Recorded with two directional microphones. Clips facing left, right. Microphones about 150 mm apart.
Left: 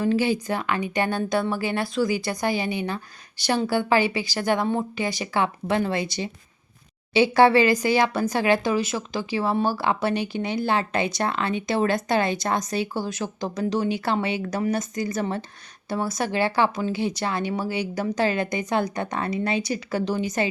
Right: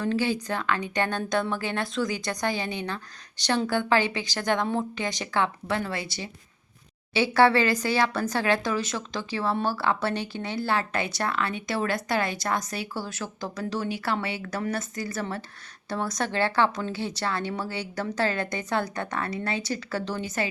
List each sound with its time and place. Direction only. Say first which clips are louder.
0.0 s speech: left 4 dB; 10° left (ahead or behind)
15.9 s speech: left 3 dB; 10° left (ahead or behind)